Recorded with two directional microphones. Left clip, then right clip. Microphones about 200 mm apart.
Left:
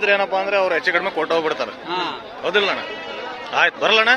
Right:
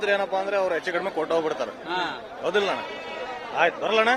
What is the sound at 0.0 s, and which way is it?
A man's voice, 5° right (ahead or behind).